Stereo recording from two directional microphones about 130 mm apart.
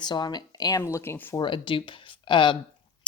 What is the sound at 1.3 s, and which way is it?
Speech, 35° left (ahead or behind).